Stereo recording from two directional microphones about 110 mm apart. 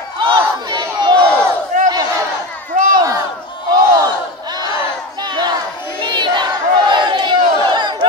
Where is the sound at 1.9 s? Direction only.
35° right (ahead or behind).